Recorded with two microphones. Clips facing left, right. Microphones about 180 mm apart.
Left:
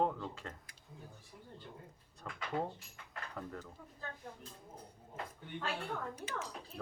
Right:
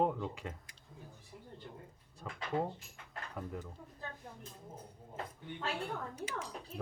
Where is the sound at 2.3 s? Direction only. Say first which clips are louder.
Right 2 dB; 5° right (ahead or behind).